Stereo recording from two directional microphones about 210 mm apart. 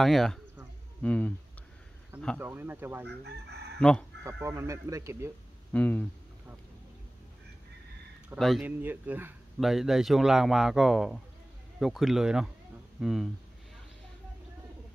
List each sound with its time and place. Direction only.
0.0 s speech: centre (ahead or behind)
2.3 s speech: 10° right (ahead or behind)
3.1 s chicken: 50° right (ahead or behind)
4.2 s speech: 15° right (ahead or behind)
5.7 s speech: 5° left (ahead or behind)
8.4 s speech: centre (ahead or behind)